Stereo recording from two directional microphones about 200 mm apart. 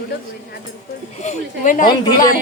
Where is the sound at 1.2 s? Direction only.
40° left (ahead or behind).